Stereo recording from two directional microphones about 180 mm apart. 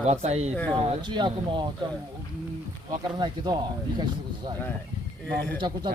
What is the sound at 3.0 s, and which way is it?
Speech, 25° right (ahead or behind).